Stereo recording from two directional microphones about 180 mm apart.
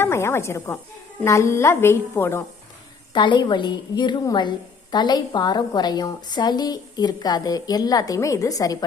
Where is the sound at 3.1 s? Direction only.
25° left (ahead or behind).